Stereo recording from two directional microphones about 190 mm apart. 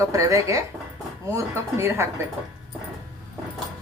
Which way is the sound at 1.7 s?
15° right (ahead or behind).